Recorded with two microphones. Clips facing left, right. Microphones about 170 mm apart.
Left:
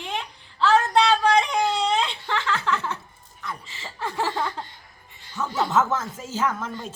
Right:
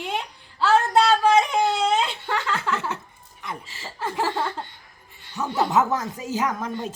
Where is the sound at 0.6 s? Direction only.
5° right (ahead or behind).